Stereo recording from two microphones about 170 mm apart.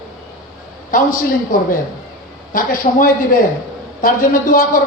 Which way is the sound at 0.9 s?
55° left (ahead or behind).